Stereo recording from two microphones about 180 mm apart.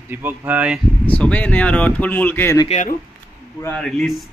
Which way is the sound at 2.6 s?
40° left (ahead or behind).